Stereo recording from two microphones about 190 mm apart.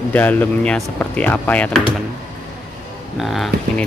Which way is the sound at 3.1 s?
Centre (ahead or behind).